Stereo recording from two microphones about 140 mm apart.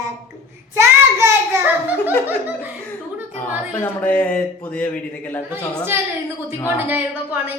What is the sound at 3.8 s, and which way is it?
A man's voice, 10° left (ahead or behind).